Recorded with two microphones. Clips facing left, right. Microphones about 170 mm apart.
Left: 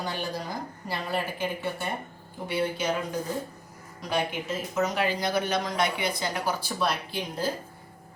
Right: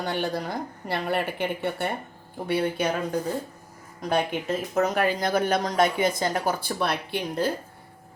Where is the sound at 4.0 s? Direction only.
55° right (ahead or behind).